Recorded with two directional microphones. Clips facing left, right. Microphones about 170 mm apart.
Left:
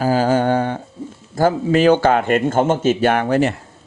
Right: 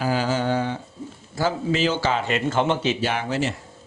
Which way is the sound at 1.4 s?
55° left (ahead or behind).